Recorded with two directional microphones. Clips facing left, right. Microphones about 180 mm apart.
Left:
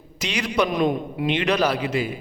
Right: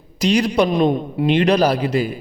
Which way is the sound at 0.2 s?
35° right (ahead or behind).